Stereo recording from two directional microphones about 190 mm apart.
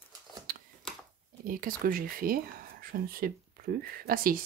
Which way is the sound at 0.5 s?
50° right (ahead or behind).